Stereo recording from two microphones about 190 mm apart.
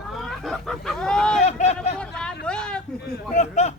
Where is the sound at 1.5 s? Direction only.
35° left (ahead or behind).